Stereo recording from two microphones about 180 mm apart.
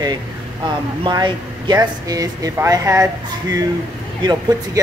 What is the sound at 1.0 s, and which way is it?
Speech, 25° right (ahead or behind).